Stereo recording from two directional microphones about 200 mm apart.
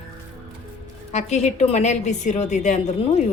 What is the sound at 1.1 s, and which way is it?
A woman's voice, 35° left (ahead or behind).